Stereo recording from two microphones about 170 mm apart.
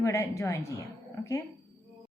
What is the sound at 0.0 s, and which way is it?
Speech, 15° left (ahead or behind).